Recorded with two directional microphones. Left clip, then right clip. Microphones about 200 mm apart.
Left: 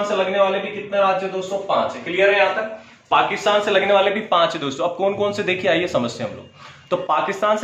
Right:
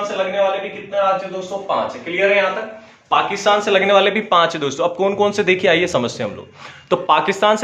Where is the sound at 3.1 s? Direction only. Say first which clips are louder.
Right 1 dB; 55° right (ahead or behind).